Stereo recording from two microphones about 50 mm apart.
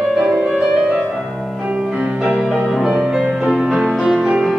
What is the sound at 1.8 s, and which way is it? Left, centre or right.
Music, centre.